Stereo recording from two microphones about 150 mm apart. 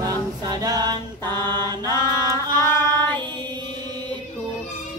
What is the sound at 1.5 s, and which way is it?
Mantra, 30° right (ahead or behind).